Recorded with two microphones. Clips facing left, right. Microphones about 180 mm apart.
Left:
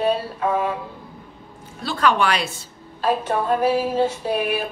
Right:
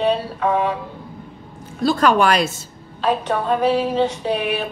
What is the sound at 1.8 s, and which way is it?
Speech, 45° right (ahead or behind).